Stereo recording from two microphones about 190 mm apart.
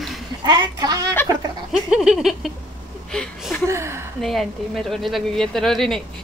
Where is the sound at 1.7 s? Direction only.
5° right (ahead or behind).